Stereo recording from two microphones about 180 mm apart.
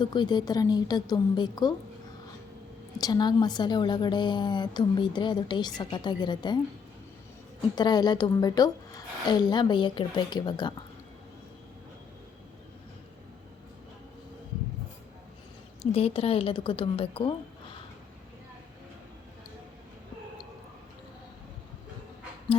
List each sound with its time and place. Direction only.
0.0 s a woman's voice: 25° left (ahead or behind)
3.0 s a woman's voice: 25° left (ahead or behind)
7.8 s a woman's voice: 25° left (ahead or behind)
15.8 s a woman's voice: 35° left (ahead or behind)